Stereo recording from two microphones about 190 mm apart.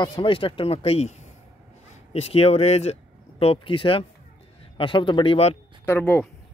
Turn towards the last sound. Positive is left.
turn(degrees=10)  # may be behind; listen again after turning